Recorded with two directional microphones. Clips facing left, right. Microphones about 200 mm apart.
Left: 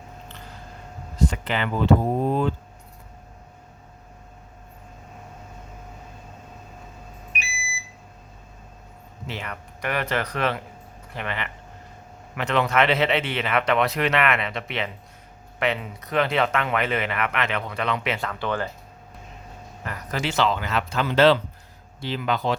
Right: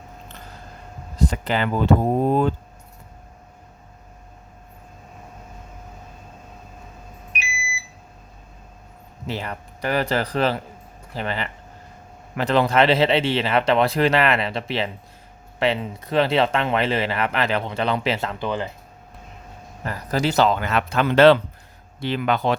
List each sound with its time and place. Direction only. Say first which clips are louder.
1.3 s speech: right 4 dB; 40° right (ahead or behind)
9.2 s speech: right 5 dB; 35° right (ahead or behind); by 18.7 s 20° right (ahead or behind)
19.8 s speech: right 6 dB; 35° right (ahead or behind); by 22.5 s 60° right (ahead or behind)